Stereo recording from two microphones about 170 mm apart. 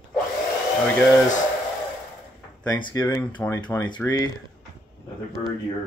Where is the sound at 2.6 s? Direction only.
20° left (ahead or behind).